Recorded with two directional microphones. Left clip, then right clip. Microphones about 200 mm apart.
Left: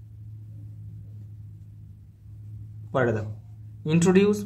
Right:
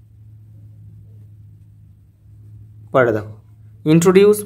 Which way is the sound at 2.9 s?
45° right (ahead or behind).